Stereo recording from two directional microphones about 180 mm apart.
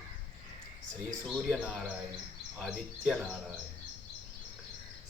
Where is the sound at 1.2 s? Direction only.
5° left (ahead or behind).